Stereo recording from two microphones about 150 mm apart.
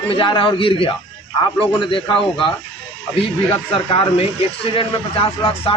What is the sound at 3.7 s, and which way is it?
A man's voice, 35° left (ahead or behind).